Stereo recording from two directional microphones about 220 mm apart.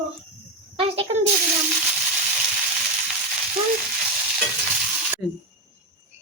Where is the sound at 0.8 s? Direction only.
25° right (ahead or behind).